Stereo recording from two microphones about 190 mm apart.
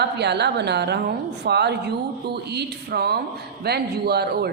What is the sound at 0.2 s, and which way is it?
Speech, 60° right (ahead or behind).